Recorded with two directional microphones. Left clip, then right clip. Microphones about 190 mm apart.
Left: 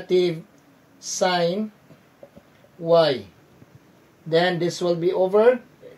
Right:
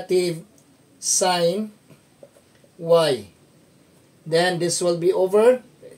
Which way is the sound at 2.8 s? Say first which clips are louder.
Even; 10° right (ahead or behind).